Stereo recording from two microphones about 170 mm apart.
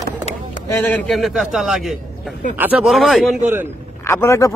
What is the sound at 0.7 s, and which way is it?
A man's voice, 10° left (ahead or behind).